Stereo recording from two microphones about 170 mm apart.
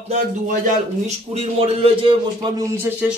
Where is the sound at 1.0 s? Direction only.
35° right (ahead or behind).